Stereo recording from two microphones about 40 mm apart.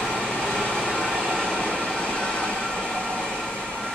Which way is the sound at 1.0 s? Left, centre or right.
Centre.